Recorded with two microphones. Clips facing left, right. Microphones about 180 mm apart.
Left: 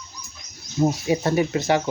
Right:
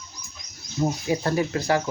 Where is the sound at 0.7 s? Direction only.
20° left (ahead or behind).